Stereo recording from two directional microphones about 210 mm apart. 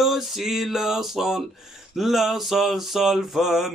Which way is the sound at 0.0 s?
Centre (ahead or behind).